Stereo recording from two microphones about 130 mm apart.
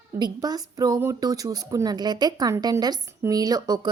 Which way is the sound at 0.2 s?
30° right (ahead or behind).